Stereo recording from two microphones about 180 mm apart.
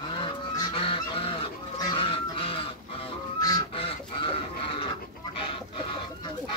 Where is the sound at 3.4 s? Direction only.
25° left (ahead or behind).